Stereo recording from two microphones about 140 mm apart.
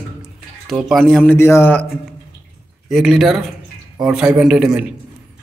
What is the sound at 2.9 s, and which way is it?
Speech, 5° right (ahead or behind).